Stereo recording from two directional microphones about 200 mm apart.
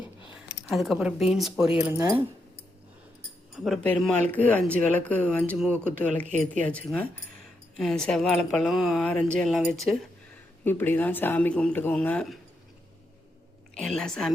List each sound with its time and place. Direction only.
0.7 s speech: centre (ahead or behind)
3.6 s speech: centre (ahead or behind)
6.2 s speech: 40° right (ahead or behind)
6.6 s speech: 5° left (ahead or behind)
13.7 s speech: 5° left (ahead or behind)